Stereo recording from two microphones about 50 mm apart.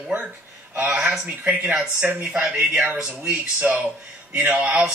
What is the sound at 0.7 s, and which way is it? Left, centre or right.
Speech, right.